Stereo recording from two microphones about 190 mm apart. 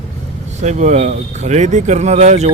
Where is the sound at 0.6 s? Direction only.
35° right (ahead or behind).